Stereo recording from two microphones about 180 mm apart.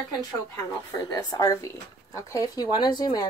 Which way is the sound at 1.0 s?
20° left (ahead or behind).